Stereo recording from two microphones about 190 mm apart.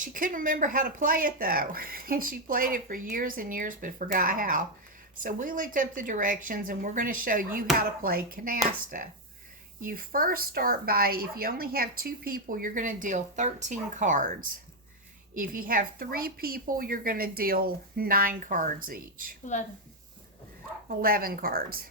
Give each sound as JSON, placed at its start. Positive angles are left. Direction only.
{"t": 0.0, "sound": "speech", "side_deg": -45}
{"t": 9.8, "sound": "speech", "side_deg": -50}
{"t": 15.4, "sound": "speech", "side_deg": -45}
{"t": 20.8, "sound": "speech", "side_deg": -50}